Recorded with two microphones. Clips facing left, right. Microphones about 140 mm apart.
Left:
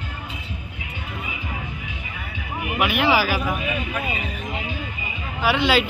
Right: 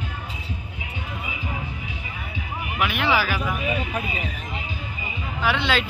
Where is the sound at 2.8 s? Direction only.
10° left (ahead or behind).